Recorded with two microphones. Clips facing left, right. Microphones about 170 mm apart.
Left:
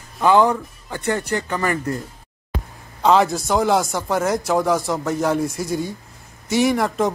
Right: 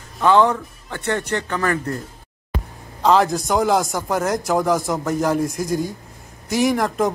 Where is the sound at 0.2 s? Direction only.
10° left (ahead or behind).